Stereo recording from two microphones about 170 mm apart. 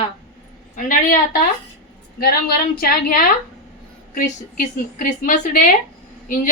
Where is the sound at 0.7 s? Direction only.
55° left (ahead or behind).